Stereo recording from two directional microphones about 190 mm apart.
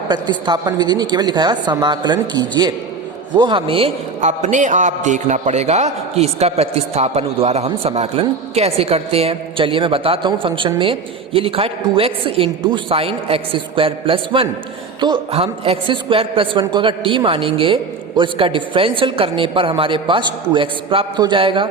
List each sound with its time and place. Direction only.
0.1 s a woman's voice: 25° right (ahead or behind)